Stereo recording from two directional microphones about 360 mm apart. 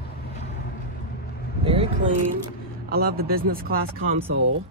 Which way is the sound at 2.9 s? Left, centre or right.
Right.